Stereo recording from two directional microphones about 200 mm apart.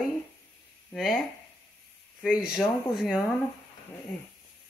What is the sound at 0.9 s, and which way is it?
Speech, centre (ahead or behind).